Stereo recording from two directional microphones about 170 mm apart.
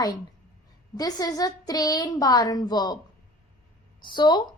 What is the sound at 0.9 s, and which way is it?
A woman's voice, 20° left (ahead or behind).